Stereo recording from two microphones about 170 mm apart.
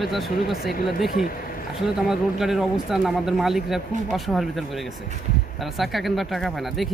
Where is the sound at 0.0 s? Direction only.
Centre (ahead or behind).